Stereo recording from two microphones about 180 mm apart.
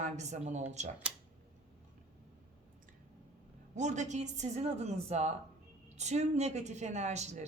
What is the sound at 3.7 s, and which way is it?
Speech, 40° right (ahead or behind).